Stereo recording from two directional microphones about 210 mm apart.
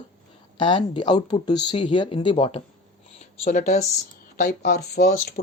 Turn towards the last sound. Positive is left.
turn(degrees=35)  # may be behind; listen again after turning